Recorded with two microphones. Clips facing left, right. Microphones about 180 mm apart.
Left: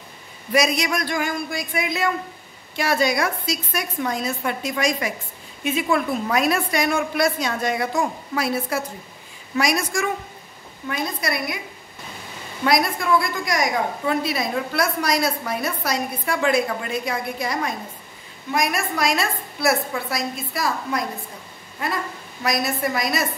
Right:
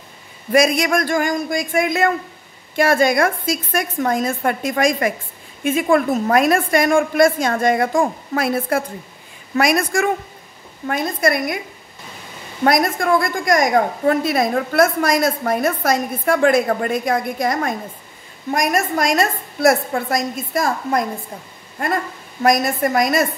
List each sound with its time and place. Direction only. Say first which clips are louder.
0.5 s a woman's voice: right 5 dB; 50° right (ahead or behind)
12.6 s a woman's voice: right 4 dB; 50° right (ahead or behind)